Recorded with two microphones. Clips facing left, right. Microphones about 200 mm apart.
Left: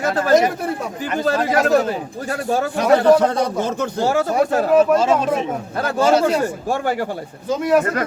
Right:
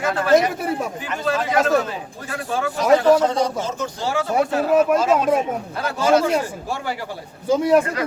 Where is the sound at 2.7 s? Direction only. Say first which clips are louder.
Left 1 dB; 60° left (ahead or behind).